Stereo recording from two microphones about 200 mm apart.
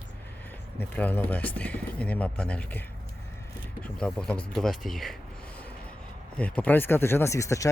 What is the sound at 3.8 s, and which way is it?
Speech, 5° left (ahead or behind).